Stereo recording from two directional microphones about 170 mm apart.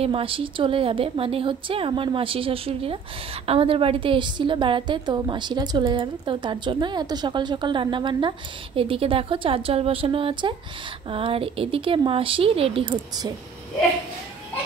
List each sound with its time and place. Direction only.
0.0 s a woman's voice: 30° right (ahead or behind)